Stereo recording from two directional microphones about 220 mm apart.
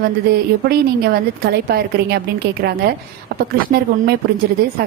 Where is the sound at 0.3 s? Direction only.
45° right (ahead or behind).